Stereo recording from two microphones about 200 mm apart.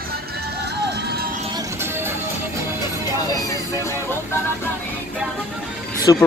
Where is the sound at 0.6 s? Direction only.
55° right (ahead or behind).